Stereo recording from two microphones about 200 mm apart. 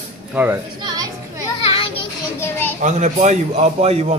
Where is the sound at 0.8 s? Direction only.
20° right (ahead or behind).